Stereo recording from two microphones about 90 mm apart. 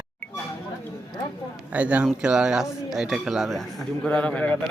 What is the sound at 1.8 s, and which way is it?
A man's voice, 15° right (ahead or behind).